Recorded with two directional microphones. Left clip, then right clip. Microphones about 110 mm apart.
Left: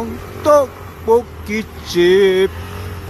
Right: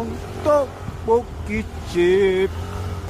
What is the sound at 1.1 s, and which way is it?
Speech, 40° left (ahead or behind).